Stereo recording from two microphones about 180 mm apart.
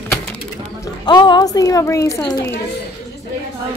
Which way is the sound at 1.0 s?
25° left (ahead or behind).